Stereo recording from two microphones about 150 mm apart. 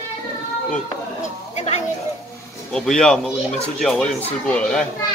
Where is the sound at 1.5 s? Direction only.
45° left (ahead or behind).